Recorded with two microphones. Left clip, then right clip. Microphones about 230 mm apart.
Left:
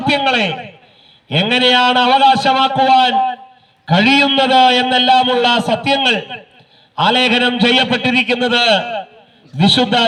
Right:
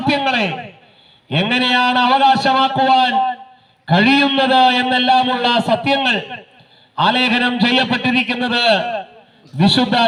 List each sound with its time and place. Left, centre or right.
0.0 s a man's voice: left